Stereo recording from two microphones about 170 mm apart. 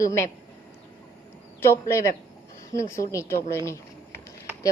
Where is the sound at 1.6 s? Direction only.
15° left (ahead or behind).